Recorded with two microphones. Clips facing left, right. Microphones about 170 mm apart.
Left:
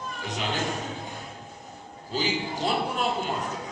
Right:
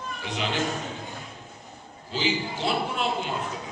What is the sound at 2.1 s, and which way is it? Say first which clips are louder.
Speech: right 1 dB; 45° left (ahead or behind).